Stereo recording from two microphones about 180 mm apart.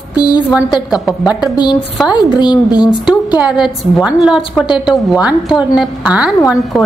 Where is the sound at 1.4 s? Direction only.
25° left (ahead or behind).